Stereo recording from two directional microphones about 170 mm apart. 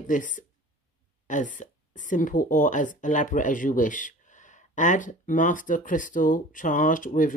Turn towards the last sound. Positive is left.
turn(degrees=50)  # may be behind; listen again after turning